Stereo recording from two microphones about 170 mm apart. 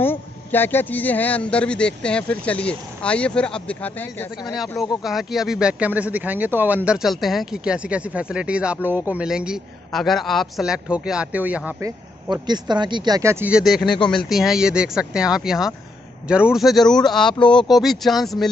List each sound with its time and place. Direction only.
0.0 s a man's voice: 10° left (ahead or behind)
5.0 s speech: centre (ahead or behind)
12.3 s speech: 25° right (ahead or behind); by 18.5 s centre (ahead or behind)